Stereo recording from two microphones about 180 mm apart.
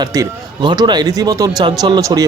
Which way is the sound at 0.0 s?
20° right (ahead or behind).